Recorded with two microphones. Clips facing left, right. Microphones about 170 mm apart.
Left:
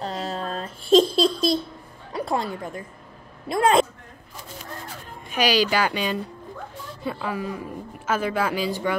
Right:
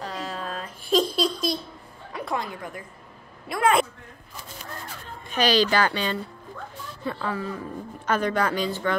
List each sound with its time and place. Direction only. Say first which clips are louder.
0.0 s a sound: left 4 dB; 30° left (ahead or behind)
2.1 s a man's voice: left 4 dB; 30° left (ahead or behind)
5.3 s speech: even; 10° left (ahead or behind)